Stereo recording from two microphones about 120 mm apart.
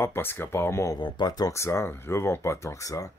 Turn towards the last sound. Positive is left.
turn(degrees=25)  # may be behind; listen again after turning